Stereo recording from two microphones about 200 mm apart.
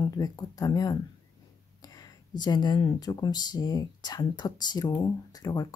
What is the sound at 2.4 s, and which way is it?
Speech, 20° left (ahead or behind).